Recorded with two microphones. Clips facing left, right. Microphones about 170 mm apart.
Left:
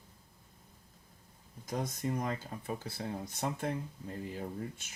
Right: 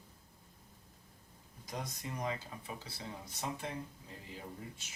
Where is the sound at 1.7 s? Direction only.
50° left (ahead or behind).